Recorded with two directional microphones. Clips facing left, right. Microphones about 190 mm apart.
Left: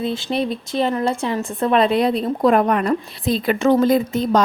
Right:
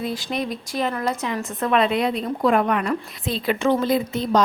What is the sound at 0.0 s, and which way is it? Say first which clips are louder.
Speech: left 4 dB; 30° left (ahead or behind).